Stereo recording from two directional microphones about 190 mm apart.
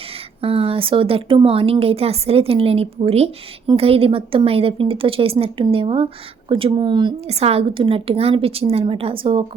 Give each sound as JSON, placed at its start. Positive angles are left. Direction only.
{"t": 0.4, "sound": "speech", "side_deg": -30}